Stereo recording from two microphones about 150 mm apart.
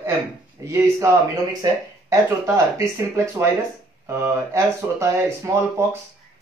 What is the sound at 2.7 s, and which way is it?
Speech, 20° right (ahead or behind).